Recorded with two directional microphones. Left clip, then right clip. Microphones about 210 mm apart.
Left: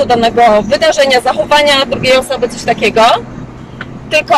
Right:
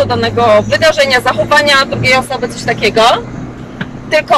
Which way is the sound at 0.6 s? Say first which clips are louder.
Even; 15° left (ahead or behind).